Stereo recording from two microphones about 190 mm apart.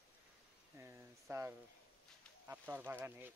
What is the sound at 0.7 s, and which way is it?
Speech, 15° right (ahead or behind).